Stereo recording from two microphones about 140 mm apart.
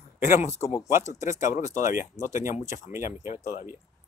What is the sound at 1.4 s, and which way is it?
Speech, 65° left (ahead or behind).